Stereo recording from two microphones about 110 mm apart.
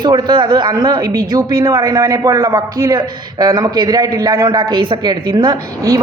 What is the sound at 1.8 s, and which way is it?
A man's voice, 25° right (ahead or behind).